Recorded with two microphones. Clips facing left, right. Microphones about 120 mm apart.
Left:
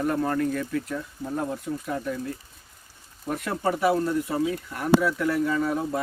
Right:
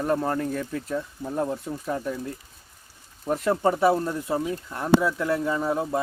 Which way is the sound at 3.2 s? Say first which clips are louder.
Right 4 dB; 30° right (ahead or behind).